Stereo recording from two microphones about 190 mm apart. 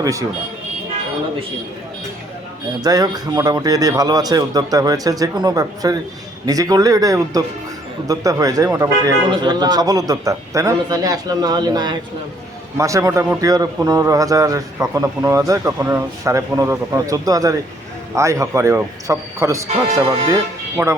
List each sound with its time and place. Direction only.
0.0 s a man's voice: 15° right (ahead or behind)
2.8 s a man's voice: 20° right (ahead or behind)
19.7 s a man's voice: 30° right (ahead or behind)
20.8 s a man's voice: 15° right (ahead or behind)